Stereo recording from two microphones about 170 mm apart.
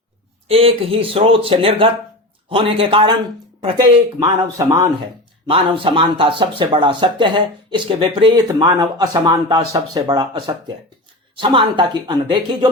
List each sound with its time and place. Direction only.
0.4 s a man's voice: 35° right (ahead or behind)
4.2 s speech: 20° right (ahead or behind)
5.5 s speech: 30° right (ahead or behind)